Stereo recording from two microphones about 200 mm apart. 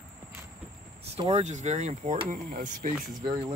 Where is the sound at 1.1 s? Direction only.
30° right (ahead or behind).